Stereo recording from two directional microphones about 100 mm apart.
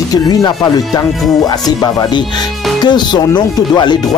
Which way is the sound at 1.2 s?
Centre (ahead or behind).